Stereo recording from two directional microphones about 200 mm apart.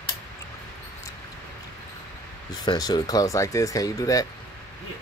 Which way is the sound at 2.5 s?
20° left (ahead or behind).